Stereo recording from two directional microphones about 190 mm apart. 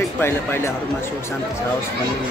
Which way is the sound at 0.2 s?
10° left (ahead or behind).